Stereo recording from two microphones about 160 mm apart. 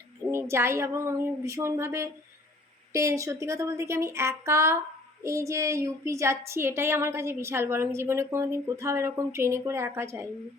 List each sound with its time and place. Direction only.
0.3 s a woman's voice: 15° right (ahead or behind)